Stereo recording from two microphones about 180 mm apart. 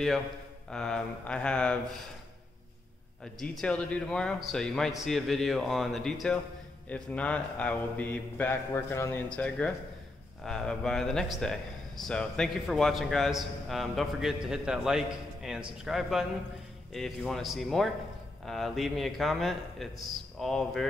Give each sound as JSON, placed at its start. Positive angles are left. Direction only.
{"t": 0.7, "sound": "a man's voice", "side_deg": 5}
{"t": 3.3, "sound": "a man's voice", "side_deg": 5}